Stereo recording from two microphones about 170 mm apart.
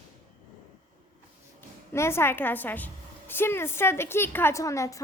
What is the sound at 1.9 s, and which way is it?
A woman's voice, 15° left (ahead or behind).